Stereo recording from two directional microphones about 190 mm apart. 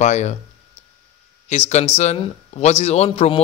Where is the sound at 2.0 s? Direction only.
35° left (ahead or behind).